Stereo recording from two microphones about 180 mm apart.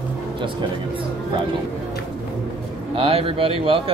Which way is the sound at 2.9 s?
30° right (ahead or behind).